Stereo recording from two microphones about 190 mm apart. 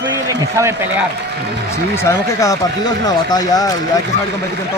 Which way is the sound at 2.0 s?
15° left (ahead or behind).